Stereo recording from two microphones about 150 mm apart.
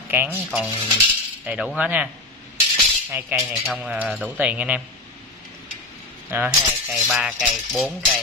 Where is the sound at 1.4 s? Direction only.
10° right (ahead or behind).